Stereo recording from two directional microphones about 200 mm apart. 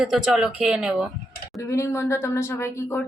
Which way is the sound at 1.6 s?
15° left (ahead or behind).